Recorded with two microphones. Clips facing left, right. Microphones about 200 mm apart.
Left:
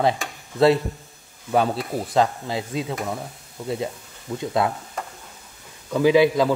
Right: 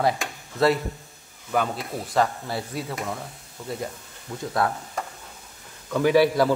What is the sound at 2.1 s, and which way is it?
Speech, 20° left (ahead or behind).